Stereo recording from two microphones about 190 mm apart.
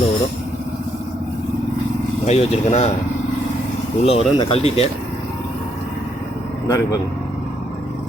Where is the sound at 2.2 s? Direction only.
35° left (ahead or behind).